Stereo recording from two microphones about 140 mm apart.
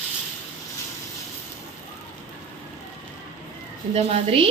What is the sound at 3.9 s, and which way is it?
Speech, 45° right (ahead or behind).